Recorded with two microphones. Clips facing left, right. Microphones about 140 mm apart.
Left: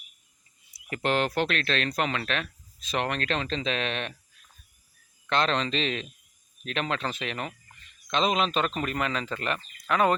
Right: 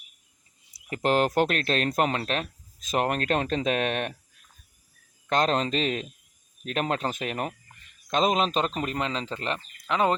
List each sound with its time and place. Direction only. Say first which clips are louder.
0.9 s speech: right 3 dB; 35° right (ahead or behind); by 4.2 s 50° right (ahead or behind)
5.3 s a man's voice: right 2 dB; 45° right (ahead or behind)
8.7 s speech: even; 25° right (ahead or behind)